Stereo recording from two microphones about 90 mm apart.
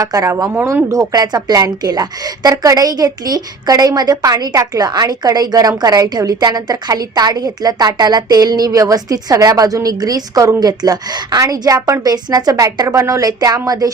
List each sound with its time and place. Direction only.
0.0 s speech: 40° right (ahead or behind)
0.9 s a woman's voice: 40° right (ahead or behind)